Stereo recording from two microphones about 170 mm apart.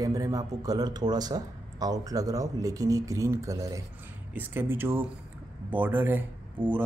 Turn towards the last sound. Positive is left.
turn(degrees=-10)  # may be behind; listen again after turning